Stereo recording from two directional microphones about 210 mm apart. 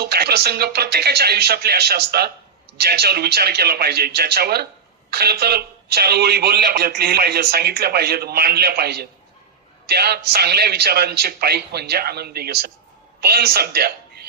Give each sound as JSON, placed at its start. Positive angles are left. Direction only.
{"t": 0.0, "sound": "a man's voice", "side_deg": -50}